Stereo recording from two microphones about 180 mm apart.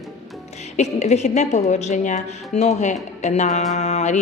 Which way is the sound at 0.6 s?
40° left (ahead or behind).